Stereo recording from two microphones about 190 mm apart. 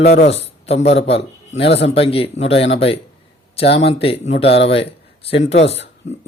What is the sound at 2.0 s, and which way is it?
A man's voice, 30° left (ahead or behind).